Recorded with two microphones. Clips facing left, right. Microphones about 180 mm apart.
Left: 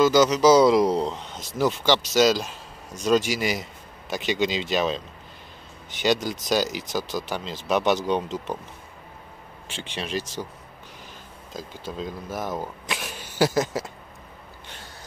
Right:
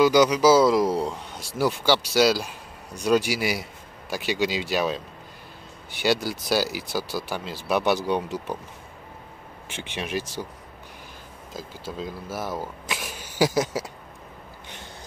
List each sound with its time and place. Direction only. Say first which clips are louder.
0.0 s a man's voice: even; 10° right (ahead or behind)
7.0 s speech: left 1 dB; 15° left (ahead or behind)
7.2 s a man's voice: left 1 dB; 10° right (ahead or behind)
8.0 s speech: left 1 dB; 20° left (ahead or behind)
9.7 s a man's voice: even; 15° right (ahead or behind)
11.5 s speech: left 1 dB; 10° right (ahead or behind)